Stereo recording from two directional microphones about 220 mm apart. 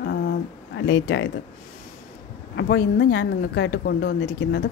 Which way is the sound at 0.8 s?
55° left (ahead or behind).